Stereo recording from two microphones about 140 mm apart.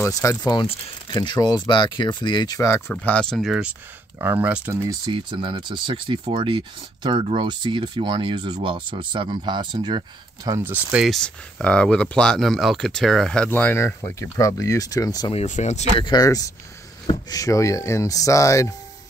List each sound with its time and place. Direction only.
0.0 s speech: 20° left (ahead or behind)
2.9 s speech: 10° left (ahead or behind)
4.2 s speech: 15° right (ahead or behind)
5.0 s speech: 35° right (ahead or behind)
10.6 s speech: 10° right (ahead or behind)
11.1 s speech: 5° left (ahead or behind); by 15.3 s 25° left (ahead or behind)
15.3 s speech: 55° left (ahead or behind)
16.0 s speech: 30° left (ahead or behind)